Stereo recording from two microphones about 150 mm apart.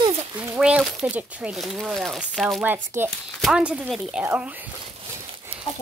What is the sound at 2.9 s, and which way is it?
Speech, 15° right (ahead or behind).